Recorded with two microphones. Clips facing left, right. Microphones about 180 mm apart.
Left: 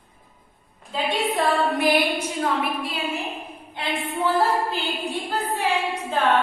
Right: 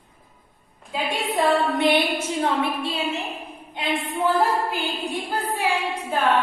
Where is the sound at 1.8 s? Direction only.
25° right (ahead or behind); by 6.2 s 10° right (ahead or behind).